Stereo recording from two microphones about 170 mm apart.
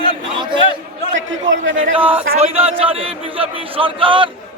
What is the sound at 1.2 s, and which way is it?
Speech, 90° right.